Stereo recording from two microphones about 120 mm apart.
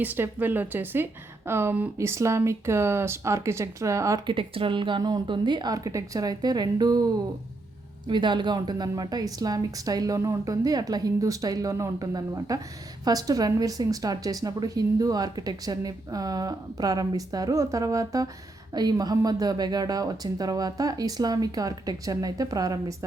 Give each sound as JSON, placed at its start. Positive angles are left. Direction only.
{"t": 0.0, "sound": "speech", "side_deg": -15}
{"t": 4.3, "sound": "a woman's voice", "side_deg": -45}